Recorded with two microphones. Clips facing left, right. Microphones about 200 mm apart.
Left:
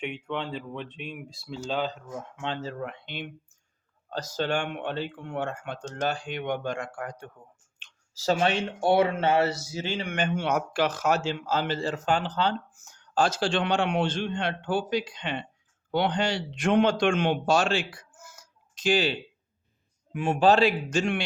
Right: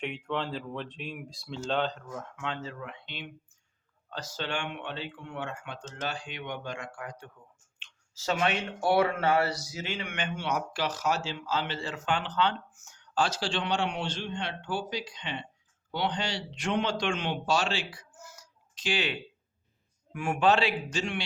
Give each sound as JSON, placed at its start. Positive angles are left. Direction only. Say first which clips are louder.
{"t": 0.0, "sound": "speech", "louder": "left 1 dB", "side_deg": 0}
{"t": 2.0, "sound": "speech", "louder": "left 3 dB", "side_deg": 20}
{"t": 7.8, "sound": "speech", "louder": "left 2 dB", "side_deg": 35}
{"t": 20.1, "sound": "speech", "louder": "left 4 dB", "side_deg": 25}
{"t": 20.4, "sound": "speech", "louder": "left 4 dB", "side_deg": 40}